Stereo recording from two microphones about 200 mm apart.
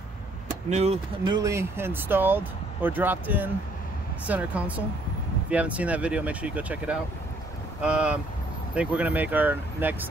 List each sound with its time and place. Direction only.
0.7 s speech: 35° right (ahead or behind)
1.2 s speech: 20° right (ahead or behind)